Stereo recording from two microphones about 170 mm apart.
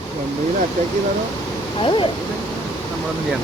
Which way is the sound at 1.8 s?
30° left (ahead or behind).